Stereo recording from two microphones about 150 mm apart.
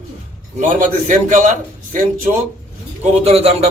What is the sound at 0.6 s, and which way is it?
Speech, 60° right (ahead or behind).